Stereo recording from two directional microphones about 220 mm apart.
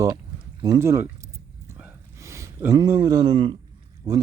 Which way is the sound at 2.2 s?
15° right (ahead or behind).